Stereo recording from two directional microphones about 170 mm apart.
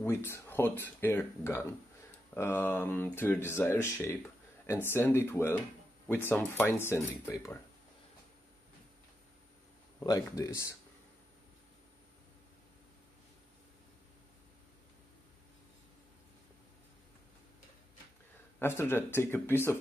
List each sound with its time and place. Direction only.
0.0 s speech: 15° left (ahead or behind)
10.0 s speech: 20° left (ahead or behind)
18.6 s speech: 15° left (ahead or behind)